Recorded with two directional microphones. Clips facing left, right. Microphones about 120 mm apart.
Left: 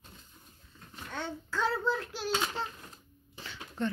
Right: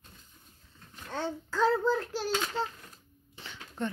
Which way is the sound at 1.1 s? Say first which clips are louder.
Right 3 dB; 40° right (ahead or behind).